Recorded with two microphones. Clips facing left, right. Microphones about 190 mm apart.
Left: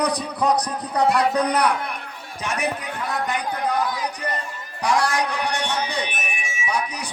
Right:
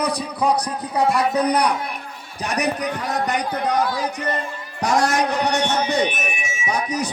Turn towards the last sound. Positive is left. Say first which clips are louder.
# right 3 dB
turn(degrees=-45)  # may be behind; listen again after turning